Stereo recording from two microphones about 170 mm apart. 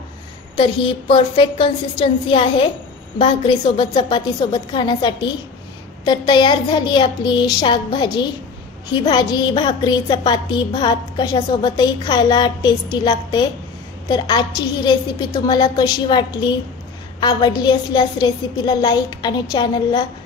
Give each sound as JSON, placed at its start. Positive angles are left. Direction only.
{"t": 0.6, "sound": "a woman's voice", "side_deg": 30}